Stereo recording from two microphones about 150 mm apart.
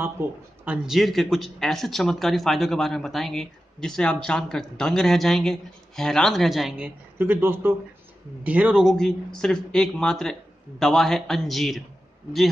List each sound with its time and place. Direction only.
0.2 s speech: 15° right (ahead or behind)
0.7 s speech: centre (ahead or behind)
7.2 s speech: 15° right (ahead or behind)